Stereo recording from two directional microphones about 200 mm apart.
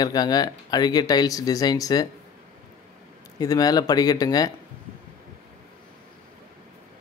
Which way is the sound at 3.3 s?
20° left (ahead or behind).